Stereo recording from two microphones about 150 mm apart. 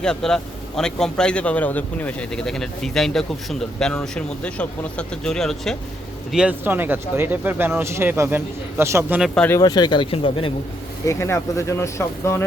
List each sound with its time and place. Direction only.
0.0 s a man's voice: 5° left (ahead or behind)
6.3 s speech: 10° right (ahead or behind)
9.2 s a man's voice: 5° left (ahead or behind)
9.5 s speech: 25° left (ahead or behind)
11.0 s speech: 20° left (ahead or behind)